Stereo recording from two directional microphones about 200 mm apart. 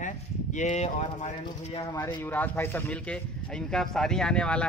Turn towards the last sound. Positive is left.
turn(degrees=5)  # may be behind; listen again after turning